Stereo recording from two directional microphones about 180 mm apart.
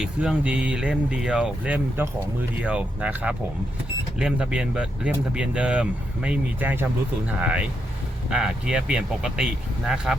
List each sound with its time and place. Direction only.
0.0 s speech: 5° right (ahead or behind)